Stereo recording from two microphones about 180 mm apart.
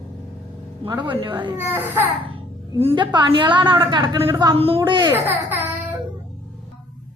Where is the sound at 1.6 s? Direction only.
10° right (ahead or behind).